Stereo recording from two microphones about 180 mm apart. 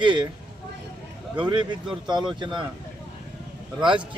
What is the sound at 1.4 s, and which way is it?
Speech, 25° right (ahead or behind).